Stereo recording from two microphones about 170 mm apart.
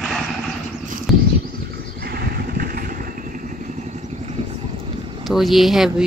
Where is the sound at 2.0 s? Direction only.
65° right (ahead or behind).